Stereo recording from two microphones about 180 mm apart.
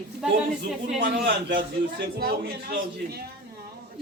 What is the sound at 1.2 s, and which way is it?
Speech, 80° right.